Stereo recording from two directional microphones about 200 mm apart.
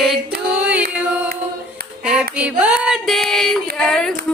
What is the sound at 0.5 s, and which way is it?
Music, 5° right (ahead or behind).